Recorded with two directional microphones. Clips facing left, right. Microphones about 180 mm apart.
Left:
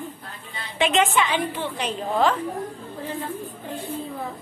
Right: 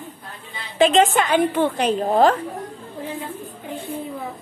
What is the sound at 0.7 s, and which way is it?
A woman's voice, 35° right (ahead or behind).